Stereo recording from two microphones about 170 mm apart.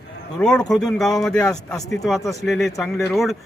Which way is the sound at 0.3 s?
5° left (ahead or behind).